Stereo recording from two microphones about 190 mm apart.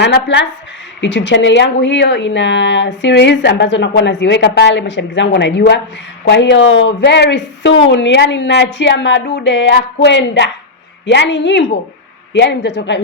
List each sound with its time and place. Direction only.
0.0 s a woman's voice: 65° left (ahead or behind)